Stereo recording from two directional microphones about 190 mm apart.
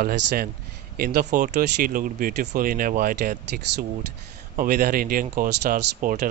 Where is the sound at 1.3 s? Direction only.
45° right (ahead or behind).